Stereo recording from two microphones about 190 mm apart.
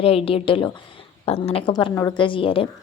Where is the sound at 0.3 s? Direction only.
30° left (ahead or behind).